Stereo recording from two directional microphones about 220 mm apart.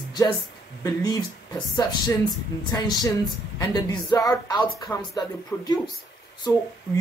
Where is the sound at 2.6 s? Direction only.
15° left (ahead or behind).